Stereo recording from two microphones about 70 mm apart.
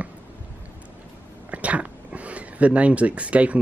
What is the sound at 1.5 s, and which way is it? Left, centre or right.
Speech, centre.